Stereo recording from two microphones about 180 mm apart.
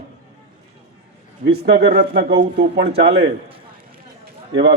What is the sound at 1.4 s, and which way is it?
A man's voice, 65° right (ahead or behind).